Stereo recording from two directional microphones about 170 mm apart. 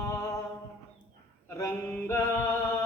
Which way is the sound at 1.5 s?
15° left (ahead or behind).